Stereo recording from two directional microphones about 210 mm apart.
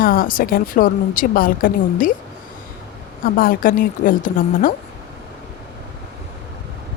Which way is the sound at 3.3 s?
40° left (ahead or behind).